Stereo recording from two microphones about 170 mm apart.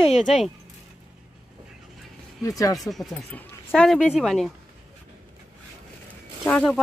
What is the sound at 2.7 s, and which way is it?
Speech, centre (ahead or behind).